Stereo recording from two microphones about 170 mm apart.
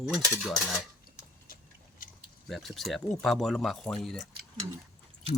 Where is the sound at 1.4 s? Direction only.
55° left (ahead or behind).